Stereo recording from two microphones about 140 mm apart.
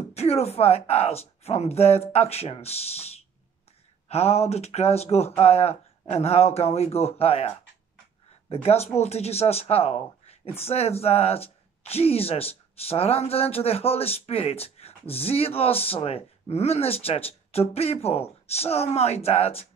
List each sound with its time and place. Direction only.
0.1 s speech: 45° left (ahead or behind)